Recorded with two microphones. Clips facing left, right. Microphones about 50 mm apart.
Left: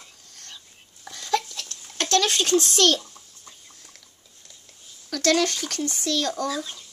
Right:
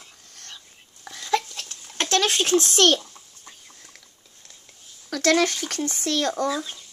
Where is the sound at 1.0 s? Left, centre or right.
Centre.